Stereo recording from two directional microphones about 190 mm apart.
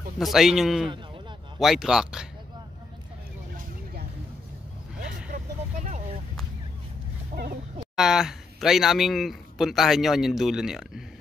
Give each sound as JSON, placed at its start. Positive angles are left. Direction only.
{"t": 0.2, "sound": "speech", "side_deg": 0}
{"t": 5.3, "sound": "vehicle", "side_deg": -40}
{"t": 7.3, "sound": "chicken", "side_deg": -40}
{"t": 7.9, "sound": "speech", "side_deg": 0}